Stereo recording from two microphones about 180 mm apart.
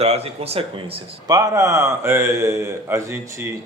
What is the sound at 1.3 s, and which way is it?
A man's voice, 15° right (ahead or behind).